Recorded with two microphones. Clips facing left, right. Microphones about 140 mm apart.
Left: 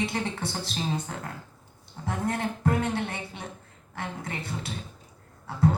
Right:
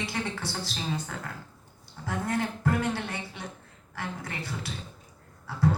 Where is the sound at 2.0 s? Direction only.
25° left (ahead or behind).